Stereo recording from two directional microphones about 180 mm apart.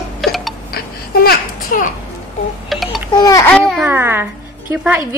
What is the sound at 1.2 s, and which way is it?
Speech, 45° left (ahead or behind).